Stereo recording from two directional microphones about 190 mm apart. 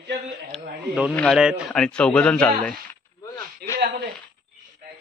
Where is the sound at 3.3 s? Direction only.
15° left (ahead or behind).